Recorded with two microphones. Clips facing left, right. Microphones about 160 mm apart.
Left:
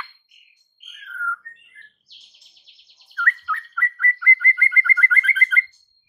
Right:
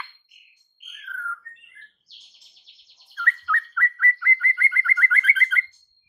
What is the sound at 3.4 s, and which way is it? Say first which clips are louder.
Bird: right 1 dB; 5° left (ahead or behind).